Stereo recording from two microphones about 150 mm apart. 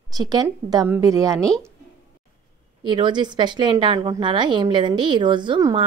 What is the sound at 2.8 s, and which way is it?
A woman's voice, 30° right (ahead or behind).